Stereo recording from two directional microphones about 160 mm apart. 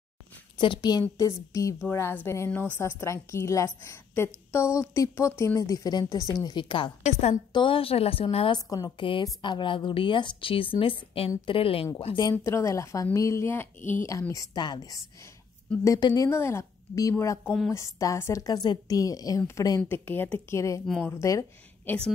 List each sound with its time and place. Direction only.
0.6 s a woman's voice: 30° left (ahead or behind)
7.1 s a woman's voice: 45° left (ahead or behind)
7.5 s a woman's voice: 35° left (ahead or behind)
8.6 s a woman's voice: 25° left (ahead or behind)
12.3 s a woman's voice: 20° left (ahead or behind)